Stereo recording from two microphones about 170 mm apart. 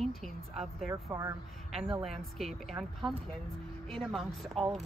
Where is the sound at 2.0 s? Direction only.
Centre (ahead or behind).